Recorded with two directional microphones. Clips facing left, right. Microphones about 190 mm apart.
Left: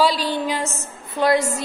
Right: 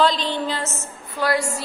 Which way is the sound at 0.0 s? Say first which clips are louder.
Left 1 dB; 10° left (ahead or behind).